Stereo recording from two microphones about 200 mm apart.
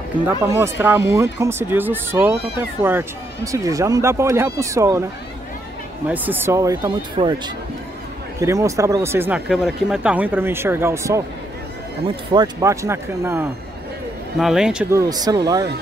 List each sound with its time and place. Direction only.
0.5 s speech: 10° right (ahead or behind)
6.0 s speech: 10° right (ahead or behind)
12.3 s speech: 20° right (ahead or behind); by 14.9 s 5° right (ahead or behind)
14.9 s speech: 15° right (ahead or behind)